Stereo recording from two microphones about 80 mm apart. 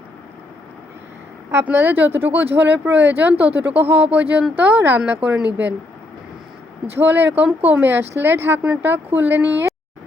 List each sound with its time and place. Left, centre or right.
1.6 s speech: right
6.9 s speech: right